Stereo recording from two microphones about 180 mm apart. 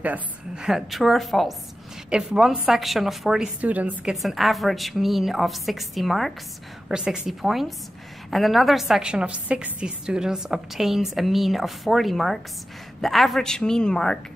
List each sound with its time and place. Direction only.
0.0 s a woman's voice: 5° right (ahead or behind)